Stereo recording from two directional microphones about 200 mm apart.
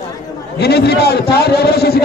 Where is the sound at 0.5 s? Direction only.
55° left (ahead or behind).